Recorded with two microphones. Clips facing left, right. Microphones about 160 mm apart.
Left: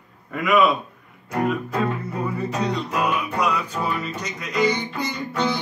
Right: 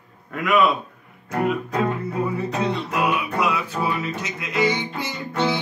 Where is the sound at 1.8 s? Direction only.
5° right (ahead or behind).